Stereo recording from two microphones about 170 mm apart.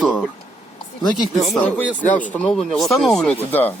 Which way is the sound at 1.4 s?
10° left (ahead or behind).